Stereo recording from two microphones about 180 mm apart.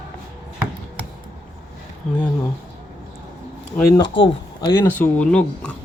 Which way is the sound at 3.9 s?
25° left (ahead or behind).